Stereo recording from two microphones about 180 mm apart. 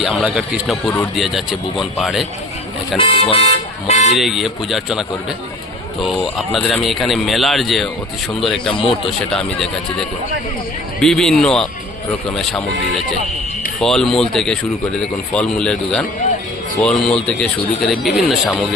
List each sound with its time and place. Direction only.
0.0 s speech: centre (ahead or behind)
3.0 s speech: 30° left (ahead or behind)
4.1 s speech: centre (ahead or behind)
8.7 s a man's voice: 30° left (ahead or behind)
9.0 s speech: 5° left (ahead or behind)
13.8 s speech: centre (ahead or behind)